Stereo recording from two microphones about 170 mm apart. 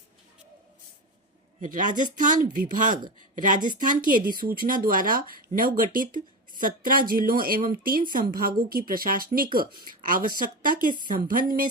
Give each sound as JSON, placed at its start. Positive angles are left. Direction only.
{"t": 1.6, "sound": "speech", "side_deg": -50}